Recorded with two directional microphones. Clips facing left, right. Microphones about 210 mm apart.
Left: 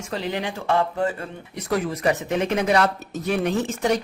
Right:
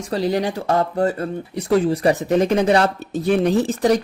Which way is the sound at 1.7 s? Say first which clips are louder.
Right 6 dB; 30° right (ahead or behind).